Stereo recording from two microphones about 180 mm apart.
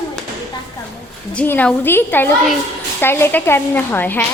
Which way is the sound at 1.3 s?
10° left (ahead or behind).